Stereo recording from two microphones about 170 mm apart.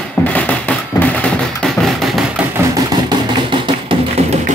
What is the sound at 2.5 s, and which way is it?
Music, 25° right (ahead or behind).